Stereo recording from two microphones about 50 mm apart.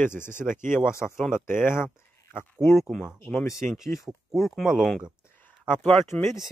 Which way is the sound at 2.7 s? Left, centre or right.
Centre.